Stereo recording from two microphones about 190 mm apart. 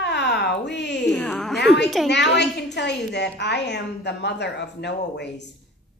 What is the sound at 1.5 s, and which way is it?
A woman's voice, 65° left (ahead or behind).